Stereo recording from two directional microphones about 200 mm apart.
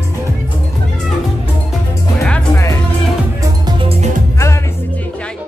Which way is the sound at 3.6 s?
25° right (ahead or behind).